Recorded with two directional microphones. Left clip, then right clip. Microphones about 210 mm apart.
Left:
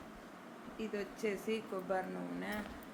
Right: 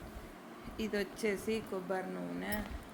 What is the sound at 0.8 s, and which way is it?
Speech, 35° right (ahead or behind).